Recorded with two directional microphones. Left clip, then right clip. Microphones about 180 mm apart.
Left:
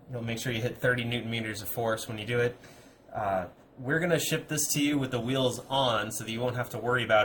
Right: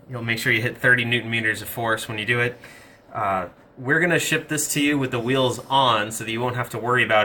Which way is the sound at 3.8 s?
30° left (ahead or behind).